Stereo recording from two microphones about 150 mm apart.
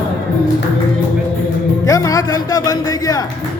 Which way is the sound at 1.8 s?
20° left (ahead or behind).